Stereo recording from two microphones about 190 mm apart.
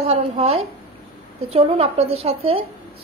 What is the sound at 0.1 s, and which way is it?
A woman's voice, 30° right (ahead or behind).